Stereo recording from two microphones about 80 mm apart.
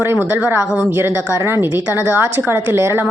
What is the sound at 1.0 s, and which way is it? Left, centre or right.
A woman's voice, right.